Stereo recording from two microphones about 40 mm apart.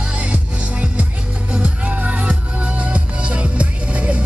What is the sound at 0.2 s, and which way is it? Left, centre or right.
Music, right.